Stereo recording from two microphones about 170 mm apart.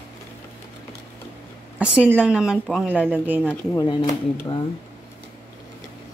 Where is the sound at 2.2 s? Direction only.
5° right (ahead or behind).